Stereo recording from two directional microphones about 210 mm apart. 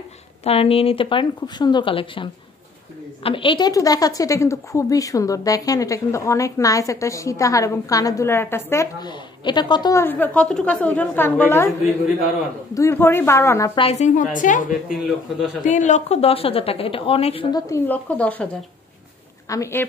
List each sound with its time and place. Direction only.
0.4 s a woman's voice: 30° left (ahead or behind)
3.3 s a woman's voice: 25° left (ahead or behind)
12.7 s a woman's voice: 10° left (ahead or behind)
13.7 s a woman's voice: 30° left (ahead or behind); by 18.5 s 5° left (ahead or behind)
19.5 s a woman's voice: 10° left (ahead or behind)